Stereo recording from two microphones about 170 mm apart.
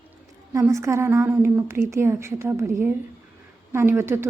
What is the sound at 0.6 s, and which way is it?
A woman's voice, 15° right (ahead or behind).